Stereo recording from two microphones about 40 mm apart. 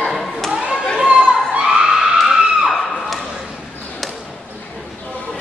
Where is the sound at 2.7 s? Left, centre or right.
Centre.